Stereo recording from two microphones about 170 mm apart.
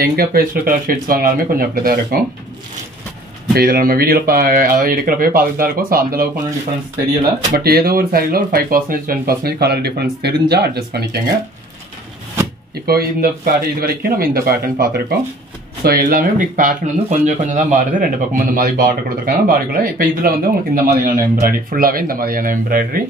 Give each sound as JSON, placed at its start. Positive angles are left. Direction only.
{"t": 0.0, "sound": "speech", "side_deg": -60}
{"t": 3.5, "sound": "speech", "side_deg": -60}
{"t": 7.5, "sound": "speech", "side_deg": -65}
{"t": 12.8, "sound": "speech", "side_deg": -65}